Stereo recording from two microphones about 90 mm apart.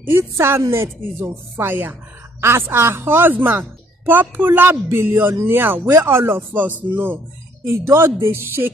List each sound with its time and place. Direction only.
0.0 s a woman's voice: 30° right (ahead or behind)